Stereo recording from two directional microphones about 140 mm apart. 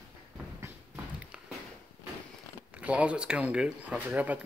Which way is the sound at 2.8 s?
10° right (ahead or behind).